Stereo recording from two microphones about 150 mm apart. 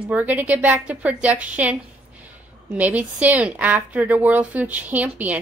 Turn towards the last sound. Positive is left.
turn(degrees=-10)  # may be behind; listen again after turning